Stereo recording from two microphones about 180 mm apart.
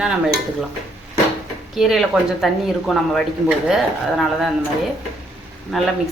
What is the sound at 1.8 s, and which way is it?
Speech, centre (ahead or behind).